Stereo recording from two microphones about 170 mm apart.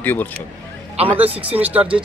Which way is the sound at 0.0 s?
10° left (ahead or behind).